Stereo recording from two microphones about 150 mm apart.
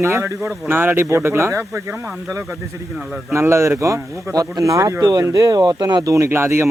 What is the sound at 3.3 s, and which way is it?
Speech, 20° right (ahead or behind).